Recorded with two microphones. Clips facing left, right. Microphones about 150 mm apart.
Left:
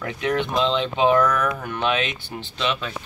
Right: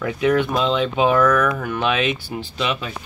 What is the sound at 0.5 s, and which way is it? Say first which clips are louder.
Speech: right 2 dB; 5° right (ahead or behind).